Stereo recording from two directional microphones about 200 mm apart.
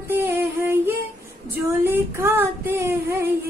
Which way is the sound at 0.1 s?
10° right (ahead or behind).